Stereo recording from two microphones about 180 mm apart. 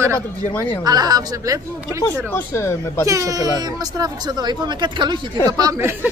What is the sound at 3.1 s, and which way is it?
A woman's voice, 20° right (ahead or behind).